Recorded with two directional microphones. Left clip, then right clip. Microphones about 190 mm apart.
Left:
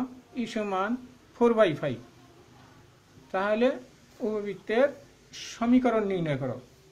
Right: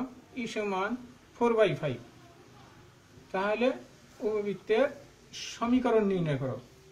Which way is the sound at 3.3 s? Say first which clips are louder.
Left 3 dB; 50° left (ahead or behind).